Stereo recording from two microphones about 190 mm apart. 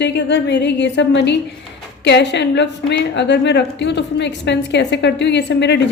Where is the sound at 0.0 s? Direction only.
65° left (ahead or behind).